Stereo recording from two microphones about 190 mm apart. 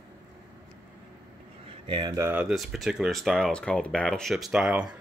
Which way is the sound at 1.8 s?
25° right (ahead or behind).